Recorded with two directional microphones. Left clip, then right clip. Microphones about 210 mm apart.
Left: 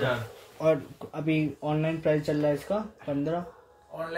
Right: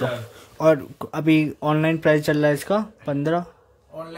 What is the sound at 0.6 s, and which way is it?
Speech, 45° right (ahead or behind).